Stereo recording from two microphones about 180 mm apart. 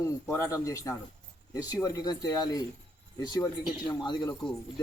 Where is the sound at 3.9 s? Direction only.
25° left (ahead or behind).